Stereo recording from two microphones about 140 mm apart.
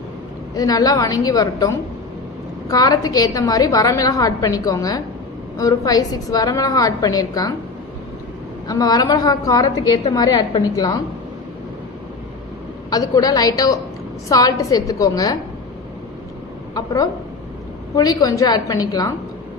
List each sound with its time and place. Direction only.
0.5 s a woman's voice: 25° left (ahead or behind)
8.6 s a woman's voice: 25° left (ahead or behind)
12.9 s a woman's voice: 25° left (ahead or behind)
16.7 s a woman's voice: 25° left (ahead or behind)